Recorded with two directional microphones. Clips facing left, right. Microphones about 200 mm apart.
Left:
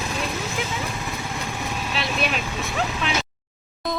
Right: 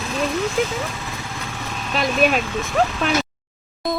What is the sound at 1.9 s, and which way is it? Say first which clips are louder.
Speech: right 9 dB; 45° right (ahead or behind).